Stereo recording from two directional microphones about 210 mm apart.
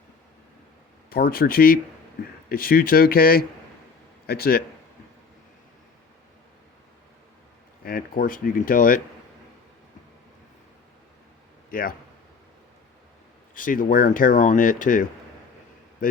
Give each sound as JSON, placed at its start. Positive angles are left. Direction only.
{"t": 1.1, "sound": "speech", "side_deg": 45}
{"t": 7.9, "sound": "speech", "side_deg": 45}
{"t": 11.7, "sound": "a man's voice", "side_deg": 40}
{"t": 13.5, "sound": "speech", "side_deg": 40}